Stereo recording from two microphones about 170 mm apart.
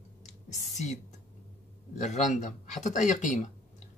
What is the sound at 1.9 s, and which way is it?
Speech, 45° left (ahead or behind).